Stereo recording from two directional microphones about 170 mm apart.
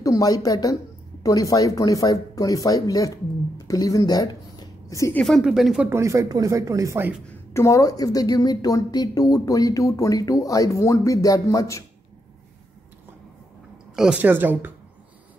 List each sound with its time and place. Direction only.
0.0 s a woman's voice: 20° left (ahead or behind)
5.2 s a woman's voice: centre (ahead or behind)
5.9 s speech: 15° right (ahead or behind)
7.5 s a woman's voice: 20° left (ahead or behind)
13.9 s a woman's voice: 5° right (ahead or behind)